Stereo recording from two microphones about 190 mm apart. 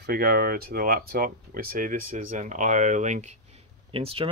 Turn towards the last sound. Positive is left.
turn(degrees=-30)  # may be behind; listen again after turning